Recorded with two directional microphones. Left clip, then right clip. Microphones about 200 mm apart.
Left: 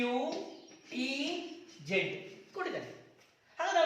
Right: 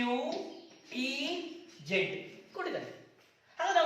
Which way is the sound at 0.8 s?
15° left (ahead or behind).